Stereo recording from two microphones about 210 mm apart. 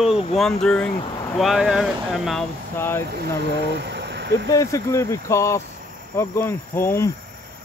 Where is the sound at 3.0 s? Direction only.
50° right (ahead or behind).